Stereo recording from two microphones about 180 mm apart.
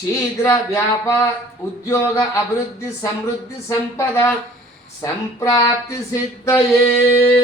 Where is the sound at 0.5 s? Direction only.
15° left (ahead or behind).